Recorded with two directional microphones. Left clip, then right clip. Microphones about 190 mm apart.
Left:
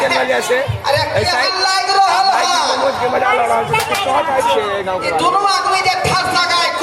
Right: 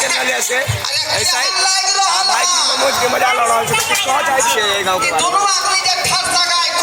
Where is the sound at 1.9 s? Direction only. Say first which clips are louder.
Left 3 dB; 60° left (ahead or behind).